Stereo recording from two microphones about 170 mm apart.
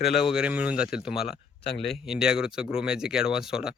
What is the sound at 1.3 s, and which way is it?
Speech, 35° left (ahead or behind).